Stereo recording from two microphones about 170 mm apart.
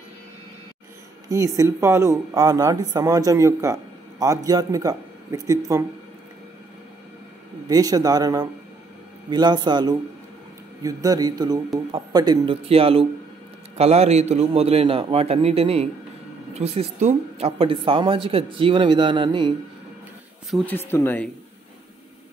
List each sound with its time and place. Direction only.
1.3 s speech: 20° right (ahead or behind)
7.6 s speech: 20° right (ahead or behind)
12.6 s speech: 35° right (ahead or behind)
20.6 s speech: 15° left (ahead or behind)